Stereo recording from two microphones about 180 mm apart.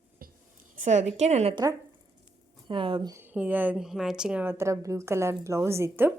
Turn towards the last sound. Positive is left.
turn(degrees=-15)  # may be behind; listen again after turning